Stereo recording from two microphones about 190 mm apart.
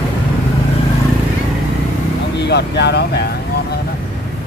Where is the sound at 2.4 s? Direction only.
60° left (ahead or behind).